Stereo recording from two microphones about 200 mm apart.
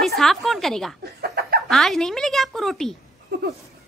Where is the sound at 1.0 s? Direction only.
55° right (ahead or behind).